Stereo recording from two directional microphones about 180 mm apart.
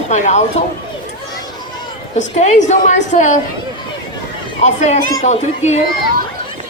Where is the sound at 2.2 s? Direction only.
40° left (ahead or behind).